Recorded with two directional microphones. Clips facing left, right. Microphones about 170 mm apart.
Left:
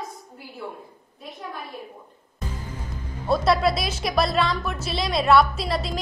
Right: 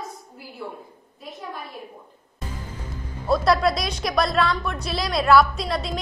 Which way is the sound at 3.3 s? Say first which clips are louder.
Right 1 dB; centre (ahead or behind).